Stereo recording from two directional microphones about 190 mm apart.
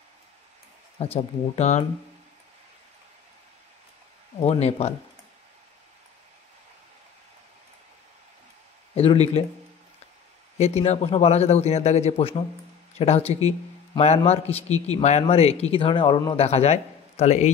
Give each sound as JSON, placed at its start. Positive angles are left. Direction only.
{"t": 0.9, "sound": "a man's voice", "side_deg": 30}
{"t": 4.4, "sound": "a man's voice", "side_deg": 35}
{"t": 8.9, "sound": "a man's voice", "side_deg": 30}
{"t": 10.6, "sound": "a man's voice", "side_deg": 35}
{"t": 16.4, "sound": "speech", "side_deg": 35}